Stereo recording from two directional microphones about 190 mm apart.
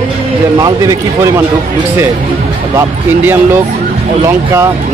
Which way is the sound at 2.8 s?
10° right (ahead or behind).